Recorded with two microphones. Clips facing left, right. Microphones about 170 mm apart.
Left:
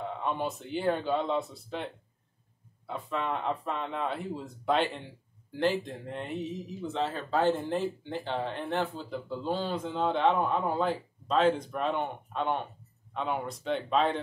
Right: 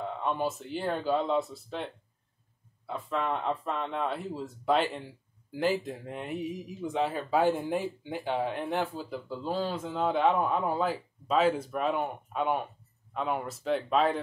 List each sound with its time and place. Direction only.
0.2 s speech: centre (ahead or behind)
2.9 s speech: centre (ahead or behind)